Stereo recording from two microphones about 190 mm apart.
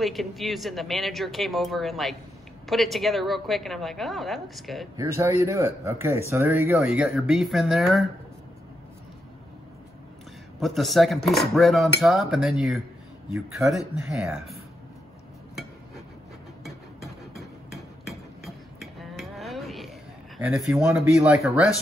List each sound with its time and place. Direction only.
0.0 s a woman's voice: centre (ahead or behind)
4.9 s a man's voice: 15° right (ahead or behind)
10.6 s a woman's voice: centre (ahead or behind)
17.4 s a sound: centre (ahead or behind)
20.3 s a woman's voice: 5° right (ahead or behind)